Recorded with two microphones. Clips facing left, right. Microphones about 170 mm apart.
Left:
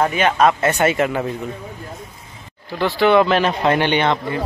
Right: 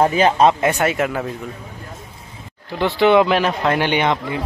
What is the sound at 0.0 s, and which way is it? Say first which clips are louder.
Speech: right 2 dB; 30° right (ahead or behind).